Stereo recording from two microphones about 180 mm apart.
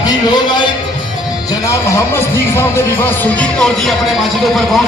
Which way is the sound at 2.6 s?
10° left (ahead or behind).